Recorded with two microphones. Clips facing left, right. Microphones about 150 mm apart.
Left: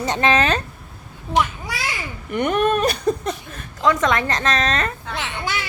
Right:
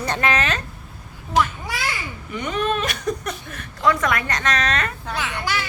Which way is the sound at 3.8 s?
20° left (ahead or behind).